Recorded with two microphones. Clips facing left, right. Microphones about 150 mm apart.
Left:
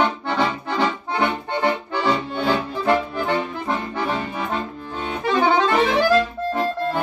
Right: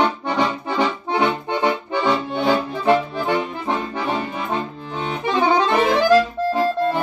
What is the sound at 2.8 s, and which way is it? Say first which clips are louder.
Accordion: right 2 dB; 20° right (ahead or behind).